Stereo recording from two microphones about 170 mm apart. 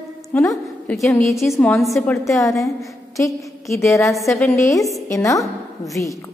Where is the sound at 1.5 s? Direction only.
5° left (ahead or behind).